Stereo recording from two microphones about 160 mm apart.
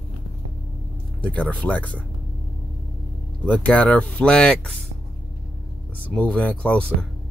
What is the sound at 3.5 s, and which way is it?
Speech, 10° left (ahead or behind).